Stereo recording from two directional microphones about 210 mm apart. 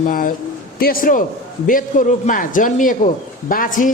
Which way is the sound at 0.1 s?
40° left (ahead or behind).